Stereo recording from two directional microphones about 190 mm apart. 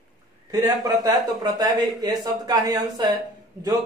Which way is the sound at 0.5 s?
20° right (ahead or behind).